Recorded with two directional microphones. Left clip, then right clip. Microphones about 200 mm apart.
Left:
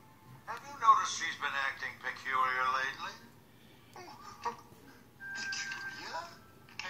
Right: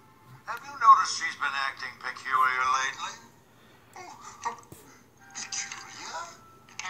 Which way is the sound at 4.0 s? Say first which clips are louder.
Right 5 dB; 15° right (ahead or behind).